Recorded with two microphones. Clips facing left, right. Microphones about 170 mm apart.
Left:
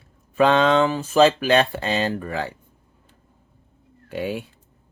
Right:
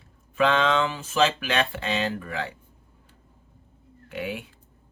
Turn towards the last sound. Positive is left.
turn(degrees=35)  # may be behind; listen again after turning